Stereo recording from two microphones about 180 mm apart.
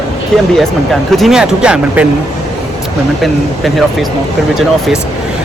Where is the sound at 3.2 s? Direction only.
Centre (ahead or behind).